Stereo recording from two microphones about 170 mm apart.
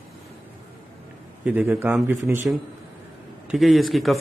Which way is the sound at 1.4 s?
10° right (ahead or behind).